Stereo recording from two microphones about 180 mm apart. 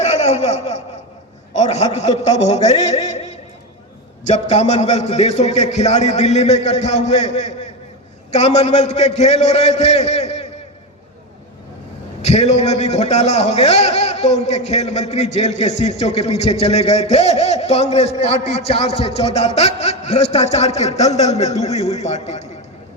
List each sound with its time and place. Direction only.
0.0 s a sound: 40° left (ahead or behind)
1.5 s a man's voice: 40° left (ahead or behind)
12.2 s a man's voice: 35° left (ahead or behind)